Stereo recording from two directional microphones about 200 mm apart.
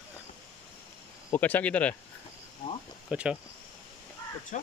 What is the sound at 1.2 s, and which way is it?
Speech, 10° left (ahead or behind).